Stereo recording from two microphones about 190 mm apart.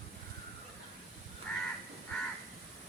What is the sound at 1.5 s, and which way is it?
Crow, 5° left (ahead or behind).